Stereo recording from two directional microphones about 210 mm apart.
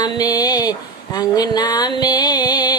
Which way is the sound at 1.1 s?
20° left (ahead or behind).